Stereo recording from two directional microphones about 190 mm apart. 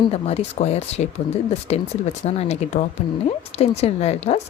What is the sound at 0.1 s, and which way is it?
Speech, 35° left (ahead or behind).